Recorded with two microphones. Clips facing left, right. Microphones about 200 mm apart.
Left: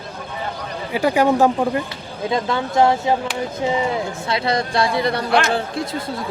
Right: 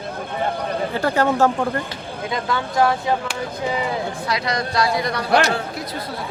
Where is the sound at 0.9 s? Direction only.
15° left (ahead or behind).